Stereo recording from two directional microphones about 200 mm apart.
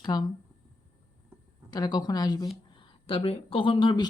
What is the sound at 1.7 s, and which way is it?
Speech, 20° left (ahead or behind).